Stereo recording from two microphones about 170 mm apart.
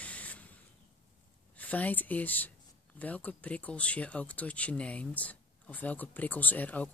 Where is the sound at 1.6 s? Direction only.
10° left (ahead or behind).